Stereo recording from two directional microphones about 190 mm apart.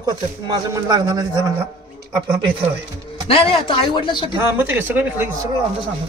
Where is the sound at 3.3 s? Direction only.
25° left (ahead or behind).